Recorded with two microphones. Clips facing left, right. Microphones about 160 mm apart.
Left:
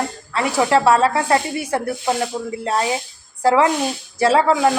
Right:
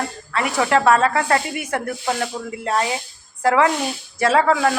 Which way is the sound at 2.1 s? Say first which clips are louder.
Left 3 dB; 20° left (ahead or behind).